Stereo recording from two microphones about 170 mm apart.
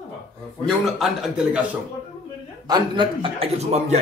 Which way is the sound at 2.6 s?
25° right (ahead or behind).